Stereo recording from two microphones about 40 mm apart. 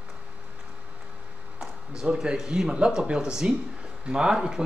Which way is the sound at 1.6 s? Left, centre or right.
Centre.